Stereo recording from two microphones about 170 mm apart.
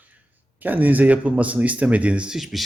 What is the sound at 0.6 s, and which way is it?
Speech, 10° right (ahead or behind).